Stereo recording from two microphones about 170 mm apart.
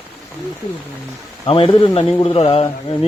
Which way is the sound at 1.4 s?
30° left (ahead or behind).